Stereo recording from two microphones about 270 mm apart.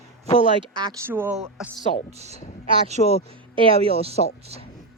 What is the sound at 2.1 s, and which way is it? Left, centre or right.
Speech, right.